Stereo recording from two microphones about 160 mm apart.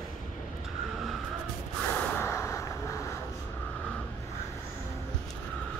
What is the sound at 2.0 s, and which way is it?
Snort, 10° left (ahead or behind).